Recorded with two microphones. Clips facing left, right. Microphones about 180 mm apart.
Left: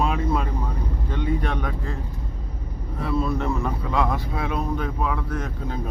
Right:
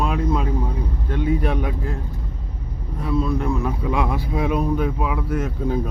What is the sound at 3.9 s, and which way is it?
Speech, 10° right (ahead or behind).